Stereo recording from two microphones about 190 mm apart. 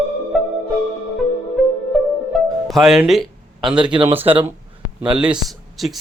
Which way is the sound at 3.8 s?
25° right (ahead or behind).